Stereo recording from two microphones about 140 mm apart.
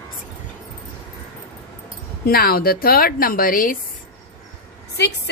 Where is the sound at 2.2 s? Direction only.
90° left.